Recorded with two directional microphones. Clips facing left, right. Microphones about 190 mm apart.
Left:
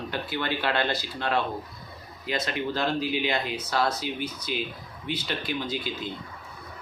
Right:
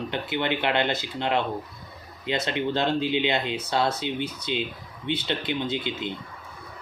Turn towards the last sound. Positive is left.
turn(degrees=-25)  # may be behind; listen again after turning